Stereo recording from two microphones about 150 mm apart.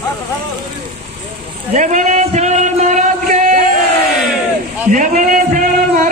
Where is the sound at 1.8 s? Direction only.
55° right (ahead or behind).